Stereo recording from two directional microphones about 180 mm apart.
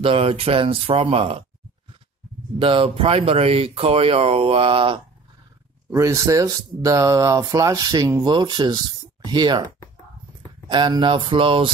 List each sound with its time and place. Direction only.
0.0 s speech: 30° right (ahead or behind)
2.6 s speech: 30° right (ahead or behind)
5.9 s speech: 15° right (ahead or behind)